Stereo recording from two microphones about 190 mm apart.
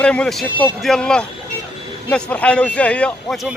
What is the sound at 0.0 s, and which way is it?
Speech, 5° left (ahead or behind).